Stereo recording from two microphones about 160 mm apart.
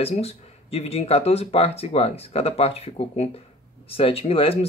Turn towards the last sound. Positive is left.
turn(degrees=35)  # may be behind; listen again after turning